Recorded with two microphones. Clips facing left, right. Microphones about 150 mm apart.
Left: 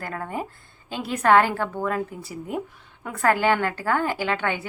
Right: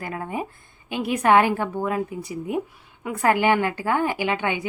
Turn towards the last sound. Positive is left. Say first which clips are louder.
# right 1 dB
turn(degrees=-15)  # may be behind; listen again after turning